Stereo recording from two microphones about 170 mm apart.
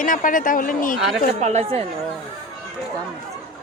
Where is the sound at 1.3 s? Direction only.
40° right (ahead or behind).